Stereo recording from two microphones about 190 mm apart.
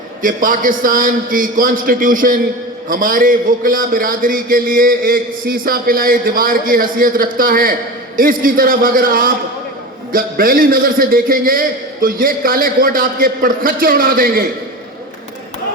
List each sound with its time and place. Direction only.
0.2 s a man's voice: 45° right (ahead or behind)